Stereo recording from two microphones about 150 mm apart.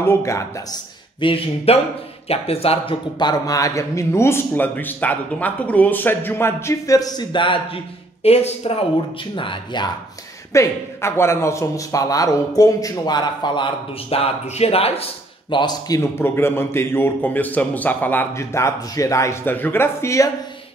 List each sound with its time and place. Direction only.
0.0 s speech: 20° left (ahead or behind)
1.2 s a man's voice: 40° left (ahead or behind)
10.5 s a man's voice: 20° left (ahead or behind); by 15.0 s 40° left (ahead or behind)
15.5 s a man's voice: 30° left (ahead or behind)
16.2 s a man's voice: 15° left (ahead or behind)